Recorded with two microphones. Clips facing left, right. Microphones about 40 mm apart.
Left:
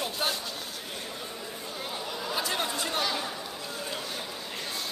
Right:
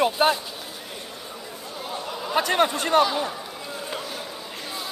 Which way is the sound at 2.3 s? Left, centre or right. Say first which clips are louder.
Right 11 dB; right.